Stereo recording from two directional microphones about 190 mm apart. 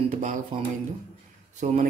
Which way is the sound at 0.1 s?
40° right (ahead or behind).